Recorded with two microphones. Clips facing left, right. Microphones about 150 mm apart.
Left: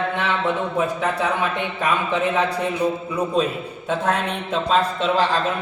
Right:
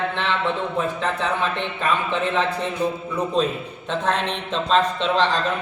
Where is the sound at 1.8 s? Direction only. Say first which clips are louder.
Left 2 dB; 15° left (ahead or behind).